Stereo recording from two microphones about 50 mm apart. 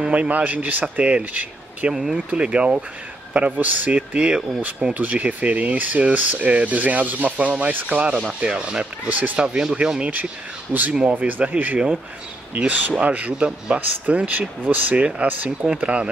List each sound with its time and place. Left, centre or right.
0.0 s speech: right
2.0 s speech: centre
4.6 s speech: right; by 9.1 s centre
9.1 s speech: right
9.4 s speech: centre
9.9 s speech: right